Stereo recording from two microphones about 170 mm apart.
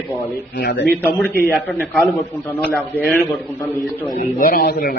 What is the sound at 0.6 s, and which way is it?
Speech, 70° left (ahead or behind).